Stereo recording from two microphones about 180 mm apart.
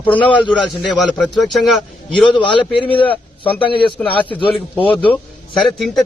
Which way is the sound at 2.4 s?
30° left (ahead or behind).